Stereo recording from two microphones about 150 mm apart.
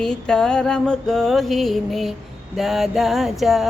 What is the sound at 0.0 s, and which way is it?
Music, 5° left (ahead or behind).